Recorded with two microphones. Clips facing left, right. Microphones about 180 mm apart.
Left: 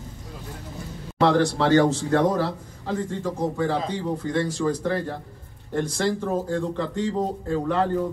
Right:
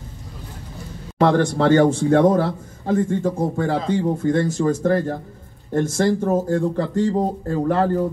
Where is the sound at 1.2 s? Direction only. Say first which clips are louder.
Right 3 dB; 45° right (ahead or behind).